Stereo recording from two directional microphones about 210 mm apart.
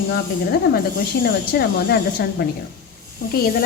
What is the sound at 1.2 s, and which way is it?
Speech, 50° left (ahead or behind).